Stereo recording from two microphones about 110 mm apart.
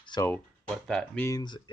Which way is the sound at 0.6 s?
5° left (ahead or behind).